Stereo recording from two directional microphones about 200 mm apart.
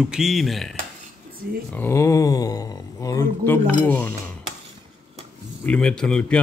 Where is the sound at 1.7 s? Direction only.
10° left (ahead or behind).